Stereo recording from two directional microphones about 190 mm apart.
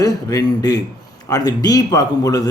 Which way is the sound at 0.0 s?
20° left (ahead or behind).